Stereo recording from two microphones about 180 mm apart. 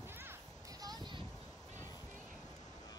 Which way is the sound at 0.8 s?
25° right (ahead or behind).